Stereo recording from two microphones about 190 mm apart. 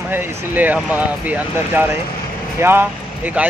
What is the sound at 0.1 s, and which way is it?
Speech, 10° right (ahead or behind).